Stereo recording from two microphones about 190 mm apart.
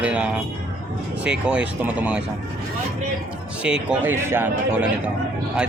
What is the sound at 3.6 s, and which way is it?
Speech, 5° right (ahead or behind).